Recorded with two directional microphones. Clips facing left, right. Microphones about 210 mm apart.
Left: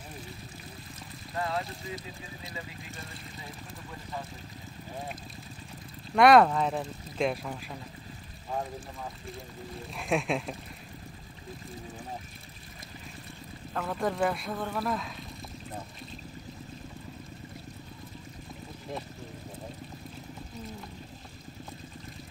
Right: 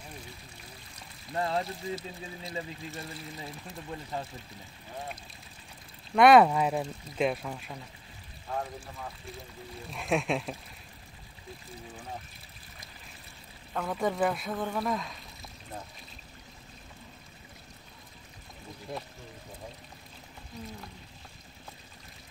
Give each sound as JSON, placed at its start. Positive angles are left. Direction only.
{"t": 1.3, "sound": "speech", "side_deg": -30}
{"t": 6.1, "sound": "speech", "side_deg": 0}
{"t": 9.8, "sound": "speech", "side_deg": 0}
{"t": 13.7, "sound": "speech", "side_deg": 0}